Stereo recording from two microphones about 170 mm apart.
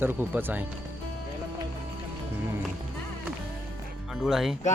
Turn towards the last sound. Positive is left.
turn(degrees=0)  # may be behind; listen again after turning